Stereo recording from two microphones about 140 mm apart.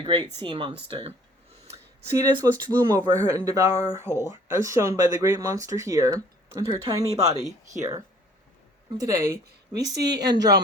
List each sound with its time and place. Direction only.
0.2 s speech: 15° left (ahead or behind)
0.4 s speech: 40° right (ahead or behind)
1.6 s a sound: 50° right (ahead or behind)
2.1 s speech: 30° right (ahead or behind)